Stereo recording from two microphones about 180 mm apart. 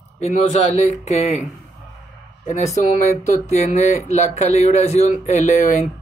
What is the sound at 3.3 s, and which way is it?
Speech, 40° left (ahead or behind).